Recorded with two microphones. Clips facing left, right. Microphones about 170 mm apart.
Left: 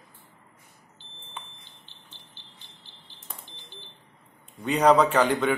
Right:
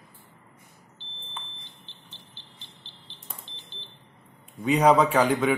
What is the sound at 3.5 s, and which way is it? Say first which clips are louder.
Smoke detector: left 1 dB; 15° left (ahead or behind).